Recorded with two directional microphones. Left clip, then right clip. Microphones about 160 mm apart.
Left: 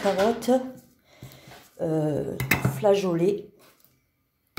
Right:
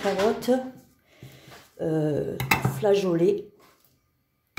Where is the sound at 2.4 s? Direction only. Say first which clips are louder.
Right 1 dB; 20° left (ahead or behind).